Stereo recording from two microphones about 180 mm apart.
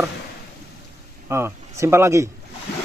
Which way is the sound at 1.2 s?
15° right (ahead or behind).